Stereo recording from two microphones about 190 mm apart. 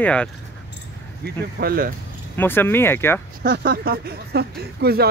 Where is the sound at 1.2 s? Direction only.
55° right (ahead or behind).